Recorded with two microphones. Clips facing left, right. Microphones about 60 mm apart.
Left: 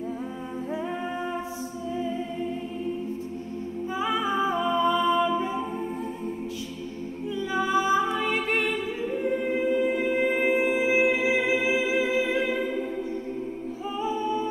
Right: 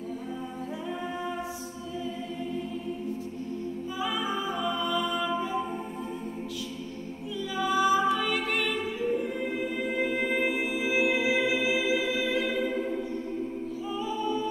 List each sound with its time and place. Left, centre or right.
4.0 s a capella: left
7.5 s music: left